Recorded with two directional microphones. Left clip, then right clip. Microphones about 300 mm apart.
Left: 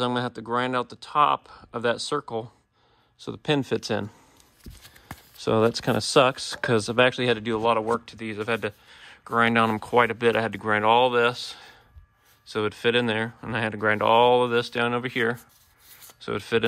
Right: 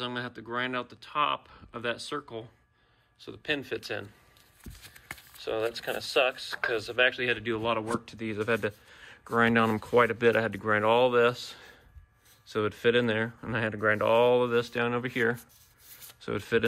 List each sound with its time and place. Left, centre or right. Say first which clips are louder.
0.0 s speech: left 8 dB; centre
5.4 s speech: left 9 dB; left; by 16.6 s centre